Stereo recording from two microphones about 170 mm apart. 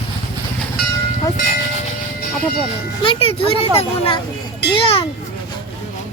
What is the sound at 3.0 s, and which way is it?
Speech, 35° left (ahead or behind).